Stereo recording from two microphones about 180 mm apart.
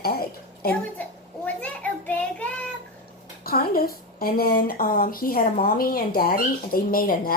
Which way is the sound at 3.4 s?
55° left (ahead or behind).